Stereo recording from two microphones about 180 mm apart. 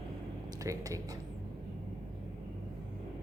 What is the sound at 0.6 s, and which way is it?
Speech, 20° right (ahead or behind).